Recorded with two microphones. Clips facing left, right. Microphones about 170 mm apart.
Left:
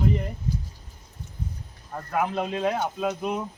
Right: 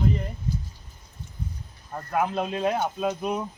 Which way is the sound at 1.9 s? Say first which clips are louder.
Right 1 dB; centre (ahead or behind).